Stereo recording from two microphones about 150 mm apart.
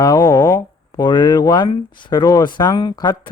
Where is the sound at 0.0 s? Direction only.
25° left (ahead or behind).